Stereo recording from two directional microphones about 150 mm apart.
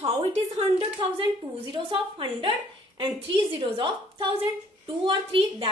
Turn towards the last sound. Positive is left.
turn(degrees=-35)  # may be behind; listen again after turning